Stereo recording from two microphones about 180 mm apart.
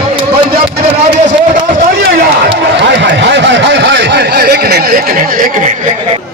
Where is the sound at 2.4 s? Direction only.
70° right (ahead or behind); by 5.7 s 50° right (ahead or behind).